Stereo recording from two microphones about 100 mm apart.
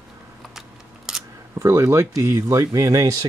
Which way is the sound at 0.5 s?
5° right (ahead or behind).